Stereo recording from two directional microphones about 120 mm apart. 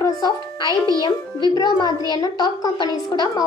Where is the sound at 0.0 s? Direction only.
35° left (ahead or behind).